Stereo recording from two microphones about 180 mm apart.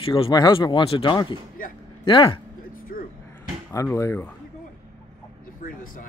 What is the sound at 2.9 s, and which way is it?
Music, 50° left (ahead or behind).